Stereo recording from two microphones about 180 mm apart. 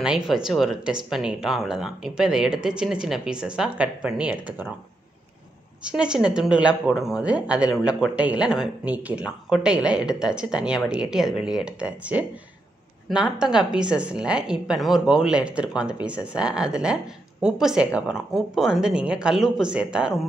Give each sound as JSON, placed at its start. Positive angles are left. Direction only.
{"t": 0.0, "sound": "a woman's voice", "side_deg": -5}
{"t": 5.9, "sound": "a woman's voice", "side_deg": -5}